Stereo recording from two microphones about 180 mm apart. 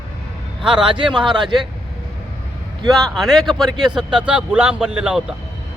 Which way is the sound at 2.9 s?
Centre (ahead or behind).